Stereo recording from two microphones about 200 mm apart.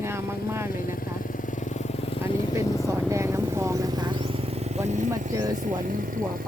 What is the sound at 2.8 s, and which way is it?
Vehicle, 15° right (ahead or behind).